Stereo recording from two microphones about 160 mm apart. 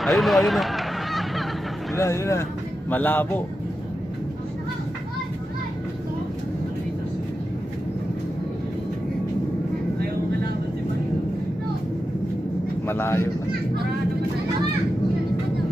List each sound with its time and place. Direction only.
0.0 s a sound: centre (ahead or behind)
2.0 s a man's voice: 20° left (ahead or behind)
12.8 s a man's voice: 15° left (ahead or behind)